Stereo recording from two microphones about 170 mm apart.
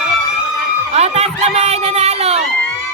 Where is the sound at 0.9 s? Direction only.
40° right (ahead or behind).